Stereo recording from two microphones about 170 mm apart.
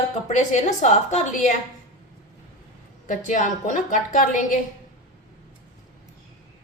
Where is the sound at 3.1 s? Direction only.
50° left (ahead or behind).